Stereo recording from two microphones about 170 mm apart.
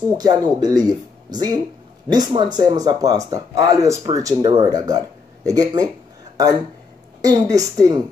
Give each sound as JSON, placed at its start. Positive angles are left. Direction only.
{"t": 0.2, "sound": "speech", "side_deg": -25}
{"t": 7.2, "sound": "speech", "side_deg": -20}